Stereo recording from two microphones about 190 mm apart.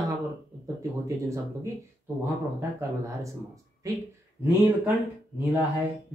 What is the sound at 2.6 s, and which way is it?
Speech, 15° right (ahead or behind).